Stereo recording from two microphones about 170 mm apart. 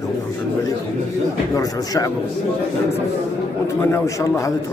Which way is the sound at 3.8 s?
15° left (ahead or behind).